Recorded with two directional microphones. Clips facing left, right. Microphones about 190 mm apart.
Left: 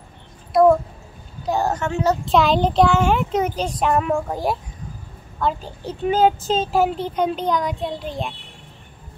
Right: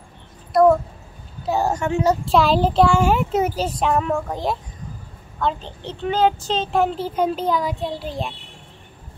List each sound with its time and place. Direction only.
0.5 s a sound: centre (ahead or behind)
1.4 s a child's voice: 10° right (ahead or behind); by 6.3 s 10° left (ahead or behind)
6.4 s speech: 45° left (ahead or behind)
6.7 s speech: 5° left (ahead or behind)